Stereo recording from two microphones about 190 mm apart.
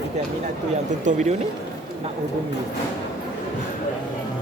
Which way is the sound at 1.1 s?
40° right (ahead or behind).